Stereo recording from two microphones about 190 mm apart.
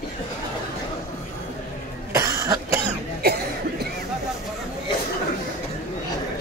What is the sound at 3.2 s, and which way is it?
Cough, 55° right (ahead or behind).